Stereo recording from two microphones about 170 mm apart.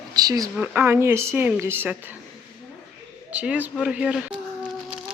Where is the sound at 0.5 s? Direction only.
5° right (ahead or behind).